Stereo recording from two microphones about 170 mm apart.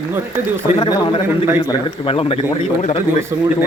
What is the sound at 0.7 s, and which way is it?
Speech, 25° left (ahead or behind).